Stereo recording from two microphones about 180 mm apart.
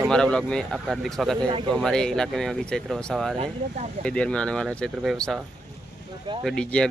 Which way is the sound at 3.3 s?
35° right (ahead or behind).